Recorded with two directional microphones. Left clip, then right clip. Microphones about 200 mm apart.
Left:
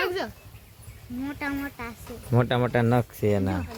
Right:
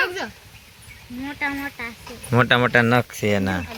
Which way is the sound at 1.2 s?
45° left (ahead or behind).